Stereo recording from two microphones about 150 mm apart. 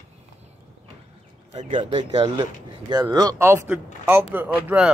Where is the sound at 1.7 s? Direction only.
40° right (ahead or behind).